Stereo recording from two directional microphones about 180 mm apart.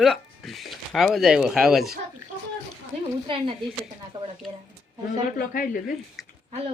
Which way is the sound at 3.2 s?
30° right (ahead or behind).